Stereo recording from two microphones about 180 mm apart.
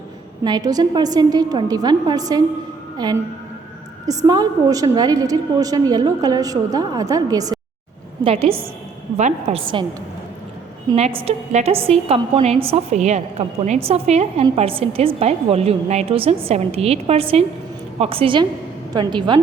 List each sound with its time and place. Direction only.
0.4 s a woman's voice: 20° right (ahead or behind)
8.2 s a woman's voice: 30° right (ahead or behind)
10.9 s a woman's voice: 35° right (ahead or behind)